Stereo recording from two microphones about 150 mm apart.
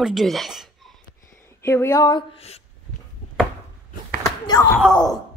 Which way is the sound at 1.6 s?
20° left (ahead or behind).